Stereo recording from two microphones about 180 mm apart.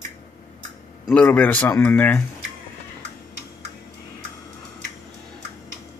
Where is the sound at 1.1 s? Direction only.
10° left (ahead or behind).